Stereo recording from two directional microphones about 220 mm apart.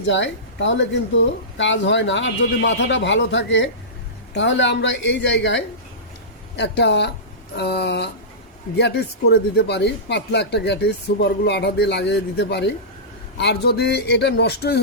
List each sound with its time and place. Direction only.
0.1 s speech: 55° left (ahead or behind)